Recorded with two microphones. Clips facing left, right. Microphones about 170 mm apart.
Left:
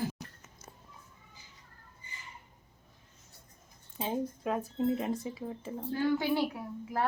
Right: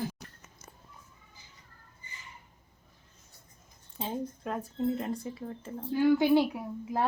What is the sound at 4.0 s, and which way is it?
Speech, 5° left (ahead or behind).